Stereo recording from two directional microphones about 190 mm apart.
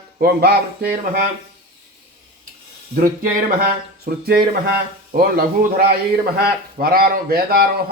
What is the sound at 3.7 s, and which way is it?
A man's voice, 55° right (ahead or behind).